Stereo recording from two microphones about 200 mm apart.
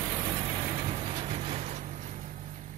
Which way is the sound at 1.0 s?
30° right (ahead or behind).